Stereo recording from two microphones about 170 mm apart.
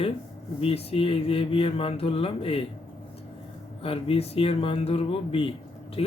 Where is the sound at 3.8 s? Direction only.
35° left (ahead or behind).